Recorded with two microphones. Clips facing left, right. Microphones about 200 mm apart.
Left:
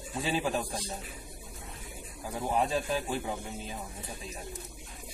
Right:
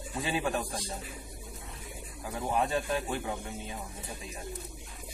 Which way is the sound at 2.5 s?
20° left (ahead or behind).